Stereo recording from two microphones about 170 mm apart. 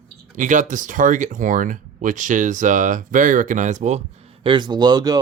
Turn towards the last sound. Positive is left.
turn(degrees=-25)  # may be behind; listen again after turning